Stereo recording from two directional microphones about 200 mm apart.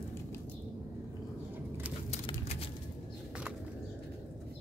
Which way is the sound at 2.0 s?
30° left (ahead or behind).